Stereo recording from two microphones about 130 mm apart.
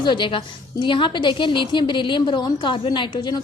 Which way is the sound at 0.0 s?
35° left (ahead or behind).